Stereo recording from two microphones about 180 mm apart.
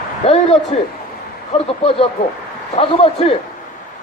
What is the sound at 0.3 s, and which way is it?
Speech, 35° left (ahead or behind).